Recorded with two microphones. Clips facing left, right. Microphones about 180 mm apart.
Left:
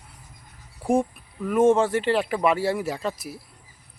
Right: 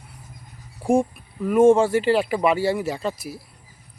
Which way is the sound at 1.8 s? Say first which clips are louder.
Right 3 dB; centre (ahead or behind).